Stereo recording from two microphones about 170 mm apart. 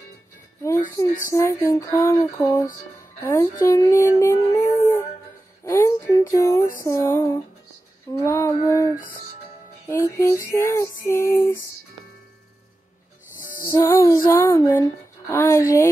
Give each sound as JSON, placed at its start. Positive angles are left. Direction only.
{"t": 0.7, "sound": "a sound", "side_deg": 15}
{"t": 1.3, "sound": "music", "side_deg": 15}
{"t": 3.6, "sound": "a sound", "side_deg": 20}
{"t": 5.7, "sound": "speech", "side_deg": 15}
{"t": 6.8, "sound": "music", "side_deg": 15}
{"t": 13.6, "sound": "music", "side_deg": 15}